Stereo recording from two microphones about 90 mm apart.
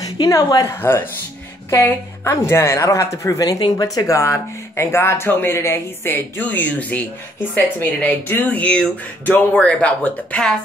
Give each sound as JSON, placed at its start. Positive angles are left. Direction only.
{"t": 0.0, "sound": "a woman's voice", "side_deg": 40}